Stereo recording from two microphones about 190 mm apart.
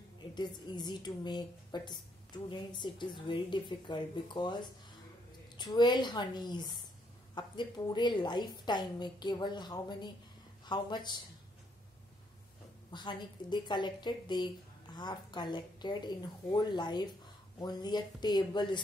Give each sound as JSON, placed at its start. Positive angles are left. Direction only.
{"t": 0.3, "sound": "a woman's voice", "side_deg": 25}
{"t": 12.9, "sound": "a woman's voice", "side_deg": 25}